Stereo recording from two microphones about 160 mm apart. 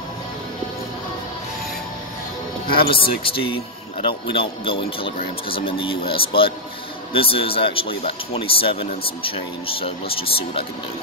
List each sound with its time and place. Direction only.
2.9 s a man's voice: 35° left (ahead or behind)